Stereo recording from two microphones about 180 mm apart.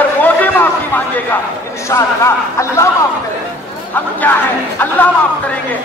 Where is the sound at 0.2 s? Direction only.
10° left (ahead or behind).